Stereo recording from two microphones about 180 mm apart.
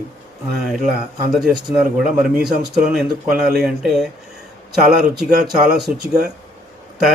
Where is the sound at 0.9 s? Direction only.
Centre (ahead or behind).